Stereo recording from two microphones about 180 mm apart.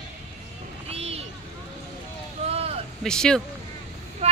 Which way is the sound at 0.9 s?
35° right (ahead or behind).